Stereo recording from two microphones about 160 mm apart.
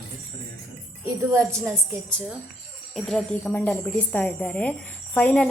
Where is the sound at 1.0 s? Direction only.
15° right (ahead or behind).